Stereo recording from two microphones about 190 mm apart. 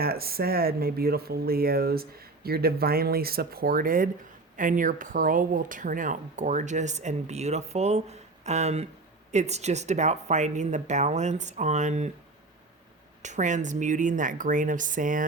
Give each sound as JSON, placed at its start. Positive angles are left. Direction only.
{"t": 0.0, "sound": "speech", "side_deg": -55}
{"t": 13.2, "sound": "speech", "side_deg": -40}